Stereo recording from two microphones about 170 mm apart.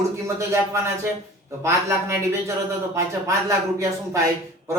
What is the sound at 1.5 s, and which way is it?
Speech, 15° right (ahead or behind).